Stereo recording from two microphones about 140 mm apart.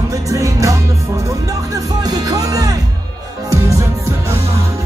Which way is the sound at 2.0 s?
25° right (ahead or behind).